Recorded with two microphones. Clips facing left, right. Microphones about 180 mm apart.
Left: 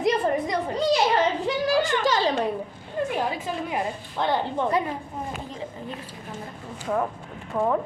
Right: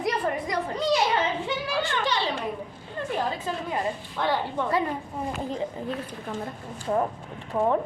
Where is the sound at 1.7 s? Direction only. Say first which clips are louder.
Left 5 dB; 45° left (ahead or behind).